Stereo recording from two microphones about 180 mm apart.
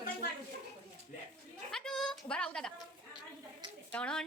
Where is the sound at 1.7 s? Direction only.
Centre (ahead or behind).